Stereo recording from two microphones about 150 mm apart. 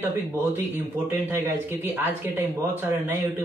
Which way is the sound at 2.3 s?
15° right (ahead or behind).